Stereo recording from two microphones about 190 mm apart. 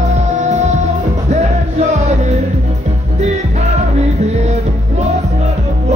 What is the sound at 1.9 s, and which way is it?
Music, 35° right (ahead or behind).